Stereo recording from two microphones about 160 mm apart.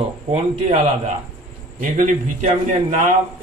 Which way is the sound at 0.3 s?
40° right (ahead or behind).